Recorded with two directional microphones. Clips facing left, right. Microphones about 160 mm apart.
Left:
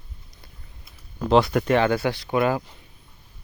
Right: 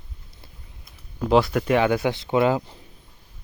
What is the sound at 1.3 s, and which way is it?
Speech, centre (ahead or behind).